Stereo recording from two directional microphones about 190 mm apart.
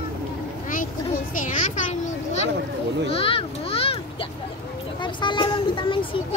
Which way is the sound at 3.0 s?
30° left (ahead or behind).